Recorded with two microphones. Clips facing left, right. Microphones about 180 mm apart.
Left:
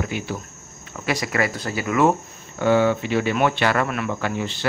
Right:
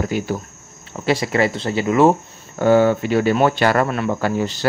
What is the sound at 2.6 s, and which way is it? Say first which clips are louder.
Speech: right 4 dB; 40° right (ahead or behind).